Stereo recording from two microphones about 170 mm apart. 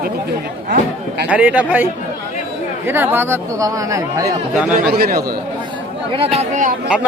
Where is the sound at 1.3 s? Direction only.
10° right (ahead or behind).